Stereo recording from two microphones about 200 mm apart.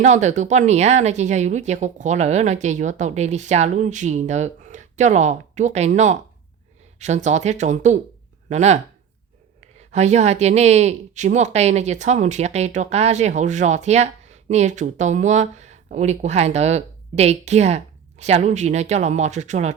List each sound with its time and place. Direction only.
0.0 s speech: 35° right (ahead or behind)
9.9 s speech: 35° right (ahead or behind)